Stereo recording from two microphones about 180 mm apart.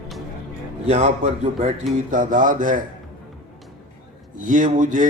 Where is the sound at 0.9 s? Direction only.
40° right (ahead or behind).